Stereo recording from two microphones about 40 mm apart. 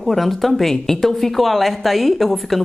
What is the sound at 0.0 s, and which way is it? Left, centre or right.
Speech, centre.